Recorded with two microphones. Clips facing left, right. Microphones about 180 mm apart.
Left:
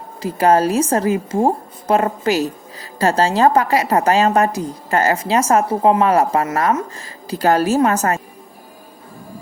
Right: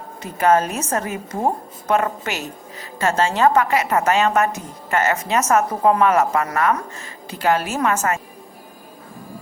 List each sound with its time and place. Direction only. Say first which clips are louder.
0.3 s a woman's voice: left 3 dB; 35° left (ahead or behind)